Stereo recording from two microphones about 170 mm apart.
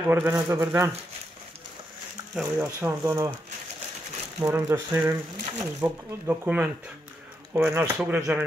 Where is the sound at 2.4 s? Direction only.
15° right (ahead or behind).